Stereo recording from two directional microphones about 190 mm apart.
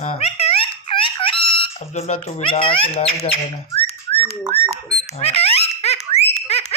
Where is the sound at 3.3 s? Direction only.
30° left (ahead or behind).